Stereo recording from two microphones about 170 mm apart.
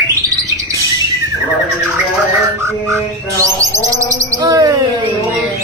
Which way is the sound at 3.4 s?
20° right (ahead or behind).